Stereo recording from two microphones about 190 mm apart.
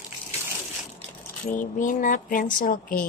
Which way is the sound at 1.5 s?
45° left (ahead or behind).